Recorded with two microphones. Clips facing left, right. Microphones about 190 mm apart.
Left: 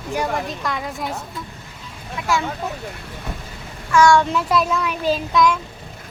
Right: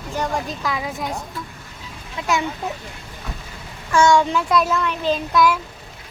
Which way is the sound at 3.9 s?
25° right (ahead or behind).